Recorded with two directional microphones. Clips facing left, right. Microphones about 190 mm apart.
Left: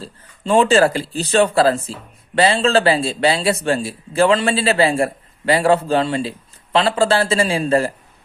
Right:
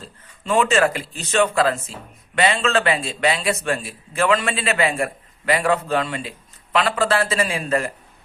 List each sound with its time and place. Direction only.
0.0 s a man's voice: 30° left (ahead or behind)